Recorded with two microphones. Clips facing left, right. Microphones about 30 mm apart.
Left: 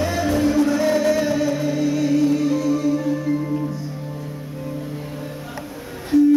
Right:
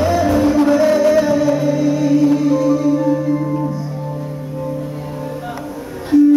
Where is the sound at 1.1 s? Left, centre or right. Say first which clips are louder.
Right 6 dB; right.